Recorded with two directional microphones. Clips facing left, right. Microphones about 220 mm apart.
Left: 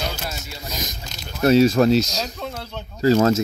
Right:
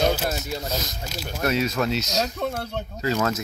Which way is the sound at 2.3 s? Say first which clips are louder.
Right 4 dB; 60° right (ahead or behind).